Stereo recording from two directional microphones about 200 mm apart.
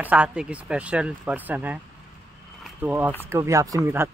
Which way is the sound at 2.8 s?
10° right (ahead or behind).